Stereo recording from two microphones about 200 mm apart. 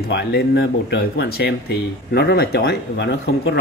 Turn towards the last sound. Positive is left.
turn(degrees=55)  # may be behind; listen again after turning